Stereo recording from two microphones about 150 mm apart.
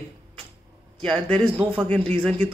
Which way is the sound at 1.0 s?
10° left (ahead or behind).